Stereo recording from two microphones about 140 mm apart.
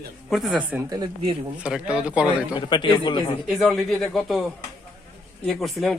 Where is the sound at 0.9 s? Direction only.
30° right (ahead or behind).